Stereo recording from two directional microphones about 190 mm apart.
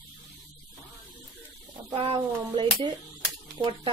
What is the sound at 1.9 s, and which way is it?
Speech, 25° right (ahead or behind).